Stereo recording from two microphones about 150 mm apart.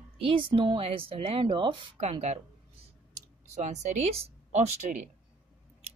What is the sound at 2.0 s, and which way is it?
Speech, 45° right (ahead or behind).